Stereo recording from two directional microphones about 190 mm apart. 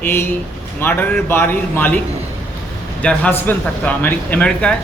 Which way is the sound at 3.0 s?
5° left (ahead or behind).